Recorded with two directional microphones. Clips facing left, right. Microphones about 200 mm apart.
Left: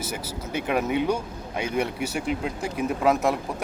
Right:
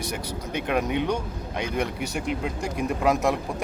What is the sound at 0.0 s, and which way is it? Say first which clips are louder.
Speech: right 1 dB; 5° left (ahead or behind).